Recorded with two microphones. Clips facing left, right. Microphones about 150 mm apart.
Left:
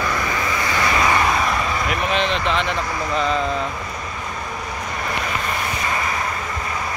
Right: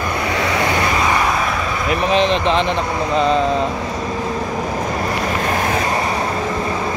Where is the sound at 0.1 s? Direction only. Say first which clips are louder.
Right 4 dB; 70° right (ahead or behind).